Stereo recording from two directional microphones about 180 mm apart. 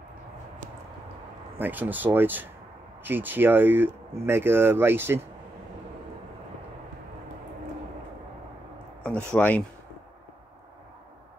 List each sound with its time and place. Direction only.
1.6 s speech: 10° right (ahead or behind)
9.0 s speech: 10° left (ahead or behind)